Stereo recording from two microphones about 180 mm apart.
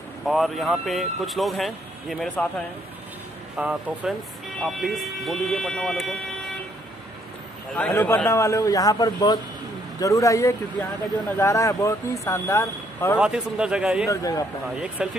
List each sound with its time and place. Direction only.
0.2 s speech: centre (ahead or behind)
3.5 s speech: 5° right (ahead or behind)
7.7 s speech: 10° left (ahead or behind)
13.2 s speech: 5° right (ahead or behind)
14.0 s a man's voice: 20° left (ahead or behind)
15.0 s speech: 5° right (ahead or behind)